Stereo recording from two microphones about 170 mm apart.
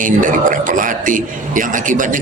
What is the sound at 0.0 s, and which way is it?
A man's voice, 50° right (ahead or behind).